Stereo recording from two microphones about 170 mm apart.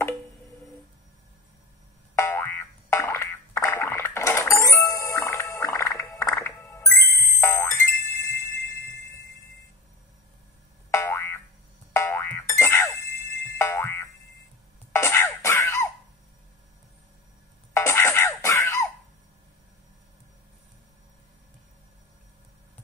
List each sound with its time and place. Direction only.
2.1 s boing: 15° left (ahead or behind)
6.3 s music: 15° left (ahead or behind)
10.9 s boing: 15° left (ahead or behind)
14.9 s music: 15° left (ahead or behind)
17.7 s music: 15° left (ahead or behind)